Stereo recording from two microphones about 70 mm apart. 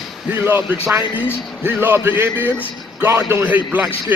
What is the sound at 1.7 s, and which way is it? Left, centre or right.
A man's voice, right.